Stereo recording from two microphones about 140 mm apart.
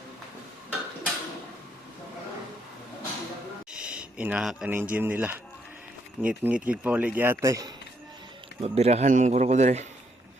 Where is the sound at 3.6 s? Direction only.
5° right (ahead or behind); by 9.9 s 55° right (ahead or behind).